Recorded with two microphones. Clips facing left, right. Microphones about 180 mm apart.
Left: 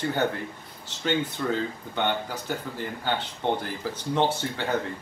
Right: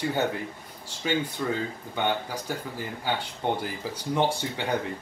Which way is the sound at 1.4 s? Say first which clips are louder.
Left 1 dB; 5° right (ahead or behind).